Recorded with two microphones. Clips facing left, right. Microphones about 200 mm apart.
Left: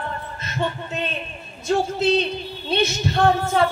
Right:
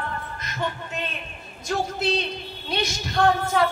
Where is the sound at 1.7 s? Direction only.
25° left (ahead or behind).